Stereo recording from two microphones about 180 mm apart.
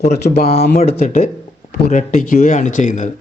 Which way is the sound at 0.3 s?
35° left (ahead or behind).